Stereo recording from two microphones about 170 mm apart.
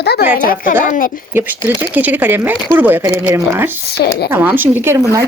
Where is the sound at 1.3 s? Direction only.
15° right (ahead or behind).